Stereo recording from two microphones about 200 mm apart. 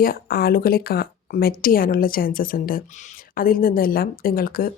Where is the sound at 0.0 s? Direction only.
45° left (ahead or behind).